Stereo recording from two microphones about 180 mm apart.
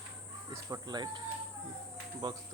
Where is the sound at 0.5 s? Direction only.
20° right (ahead or behind).